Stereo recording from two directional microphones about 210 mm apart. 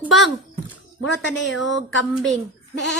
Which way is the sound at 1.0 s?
60° left (ahead or behind).